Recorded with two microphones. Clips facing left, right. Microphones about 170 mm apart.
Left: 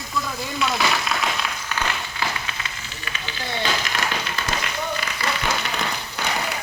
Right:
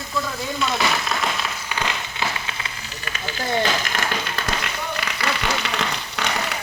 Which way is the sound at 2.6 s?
40° right (ahead or behind).